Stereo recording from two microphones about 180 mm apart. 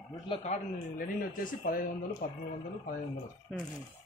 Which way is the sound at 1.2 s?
50° left (ahead or behind).